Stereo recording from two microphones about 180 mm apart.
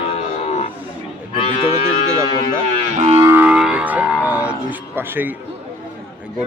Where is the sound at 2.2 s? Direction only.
25° left (ahead or behind).